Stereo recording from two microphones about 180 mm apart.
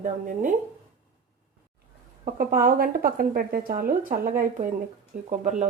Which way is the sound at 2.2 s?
50° right (ahead or behind).